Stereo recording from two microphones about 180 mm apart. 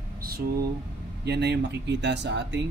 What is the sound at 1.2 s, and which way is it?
Speech, 70° right (ahead or behind).